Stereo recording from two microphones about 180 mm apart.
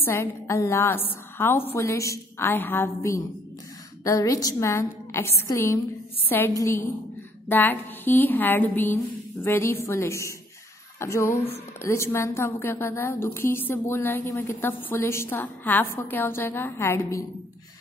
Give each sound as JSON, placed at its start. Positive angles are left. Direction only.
{"t": 0.0, "sound": "a woman's voice", "side_deg": 15}